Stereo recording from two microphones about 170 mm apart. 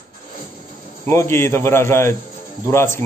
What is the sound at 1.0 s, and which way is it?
Speech, 15° left (ahead or behind).